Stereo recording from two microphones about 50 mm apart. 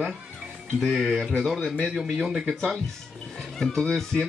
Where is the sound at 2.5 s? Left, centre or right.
Centre.